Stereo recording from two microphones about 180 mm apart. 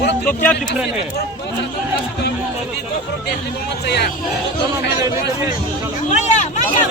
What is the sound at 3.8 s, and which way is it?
Speech, 65° left (ahead or behind).